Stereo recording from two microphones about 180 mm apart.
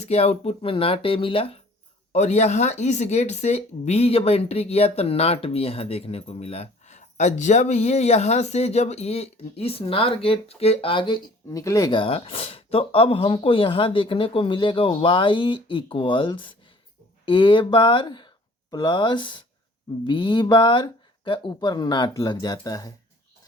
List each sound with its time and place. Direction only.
0.0 s speech: 35° left (ahead or behind); by 22.9 s 20° left (ahead or behind)